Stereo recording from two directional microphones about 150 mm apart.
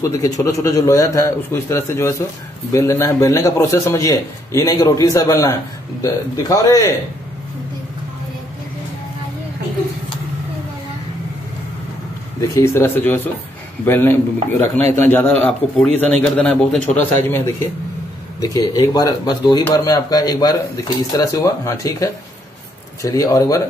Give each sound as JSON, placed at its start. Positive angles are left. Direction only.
{"t": 0.1, "sound": "a man's voice", "side_deg": 25}
{"t": 12.4, "sound": "a man's voice", "side_deg": 20}